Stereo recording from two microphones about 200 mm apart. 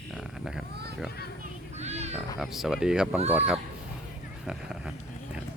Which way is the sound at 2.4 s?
Centre (ahead or behind).